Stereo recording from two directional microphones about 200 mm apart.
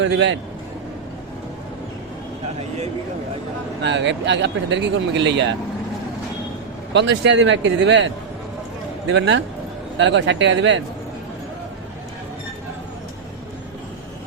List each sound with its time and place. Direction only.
0.0 s speech: 65° right (ahead or behind)
2.6 s a sound: 35° right (ahead or behind)
3.8 s speech: 60° right (ahead or behind)
6.9 s speech: 60° right (ahead or behind)